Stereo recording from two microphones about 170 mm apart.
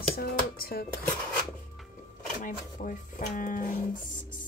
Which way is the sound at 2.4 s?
50° left (ahead or behind).